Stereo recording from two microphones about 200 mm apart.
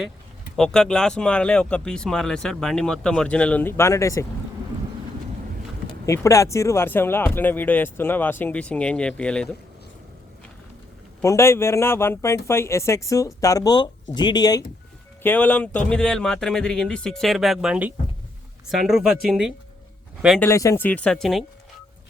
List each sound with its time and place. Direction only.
0.5 s speech: 5° left (ahead or behind)
6.1 s speech: 15° left (ahead or behind)
11.2 s speech: 15° left (ahead or behind)
15.2 s speech: 10° left (ahead or behind)
20.4 s speech: 15° left (ahead or behind)